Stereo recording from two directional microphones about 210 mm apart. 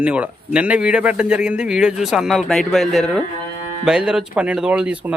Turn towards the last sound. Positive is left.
turn(degrees=-5)  # may be behind; listen again after turning